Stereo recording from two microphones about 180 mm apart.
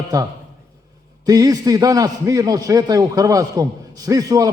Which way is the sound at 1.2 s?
20° right (ahead or behind).